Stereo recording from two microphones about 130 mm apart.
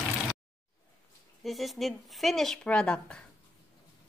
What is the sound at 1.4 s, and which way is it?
Speech, centre (ahead or behind).